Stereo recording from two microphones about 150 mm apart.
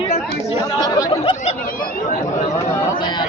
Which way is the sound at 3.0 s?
30° left (ahead or behind).